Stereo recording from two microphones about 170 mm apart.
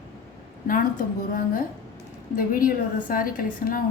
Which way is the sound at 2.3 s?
55° left (ahead or behind).